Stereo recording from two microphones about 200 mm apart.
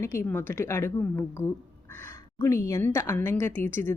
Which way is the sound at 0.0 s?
10° left (ahead or behind).